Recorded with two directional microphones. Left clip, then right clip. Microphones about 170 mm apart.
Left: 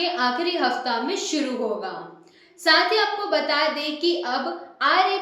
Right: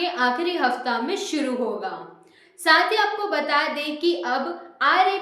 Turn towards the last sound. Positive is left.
turn(degrees=-20)  # may be behind; listen again after turning